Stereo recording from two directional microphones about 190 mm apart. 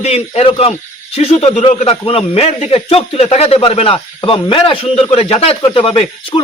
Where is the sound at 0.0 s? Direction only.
35° left (ahead or behind).